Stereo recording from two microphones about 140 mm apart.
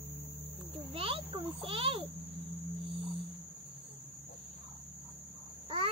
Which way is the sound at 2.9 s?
40° right (ahead or behind).